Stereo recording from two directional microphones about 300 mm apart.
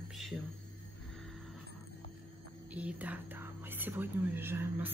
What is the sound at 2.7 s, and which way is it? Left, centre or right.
Speech, centre.